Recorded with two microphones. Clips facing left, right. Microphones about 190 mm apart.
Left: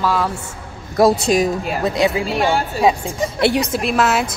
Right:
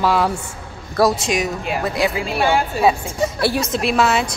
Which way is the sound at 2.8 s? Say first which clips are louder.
Even; 20° left (ahead or behind).